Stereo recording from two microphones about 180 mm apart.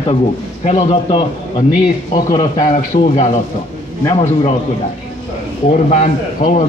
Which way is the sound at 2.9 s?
40° left (ahead or behind).